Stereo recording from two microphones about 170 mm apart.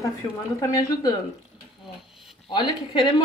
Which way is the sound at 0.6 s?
20° left (ahead or behind).